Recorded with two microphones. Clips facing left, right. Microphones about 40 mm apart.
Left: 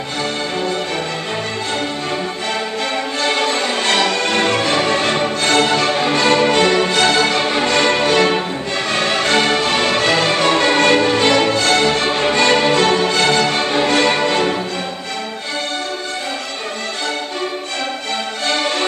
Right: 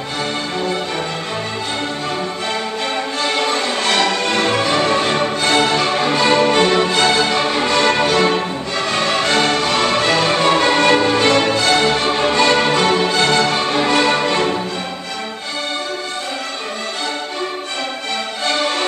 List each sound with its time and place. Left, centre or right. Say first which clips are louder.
3.4 s music: even; centre
10.3 s music: even; centre